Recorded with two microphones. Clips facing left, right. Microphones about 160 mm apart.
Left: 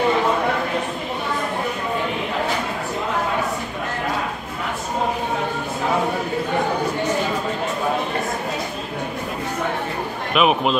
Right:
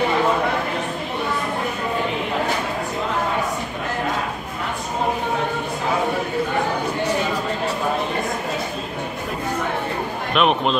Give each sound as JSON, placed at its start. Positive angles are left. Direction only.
{"t": 10.3, "sound": "speech", "side_deg": 5}